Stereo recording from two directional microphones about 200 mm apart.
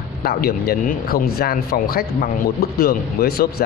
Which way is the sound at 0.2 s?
50° left (ahead or behind).